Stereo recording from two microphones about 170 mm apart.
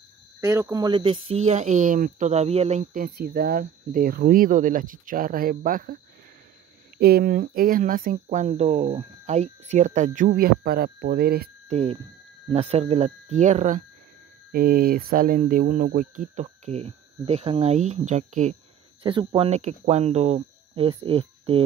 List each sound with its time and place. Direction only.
0.4 s speech: 15° right (ahead or behind); by 5.9 s 55° right (ahead or behind)
7.0 s speech: 65° right (ahead or behind)
11.7 s speech: 35° right (ahead or behind)
14.5 s speech: 60° right (ahead or behind); by 18.6 s 45° right (ahead or behind)
19.0 s speech: 30° right (ahead or behind)